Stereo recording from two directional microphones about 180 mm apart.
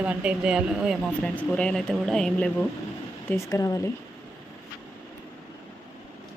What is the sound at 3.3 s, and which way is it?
Speech, 15° left (ahead or behind).